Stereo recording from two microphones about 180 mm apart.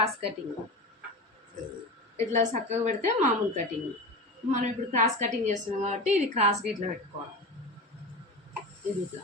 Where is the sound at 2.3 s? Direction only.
40° right (ahead or behind).